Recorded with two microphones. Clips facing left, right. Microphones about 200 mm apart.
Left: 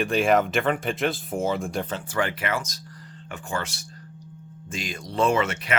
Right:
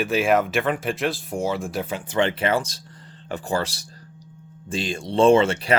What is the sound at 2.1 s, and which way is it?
Speech, 25° right (ahead or behind).